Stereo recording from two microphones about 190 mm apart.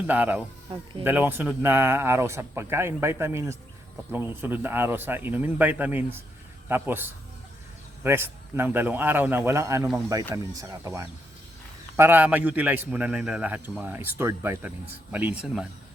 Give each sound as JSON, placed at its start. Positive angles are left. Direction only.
{"t": 0.1, "sound": "a man's voice", "side_deg": -10}